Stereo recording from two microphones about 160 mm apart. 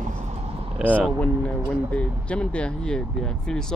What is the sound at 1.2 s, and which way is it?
Speech, 5° left (ahead or behind).